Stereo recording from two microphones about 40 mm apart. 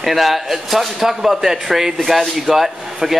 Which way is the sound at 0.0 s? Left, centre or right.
Centre.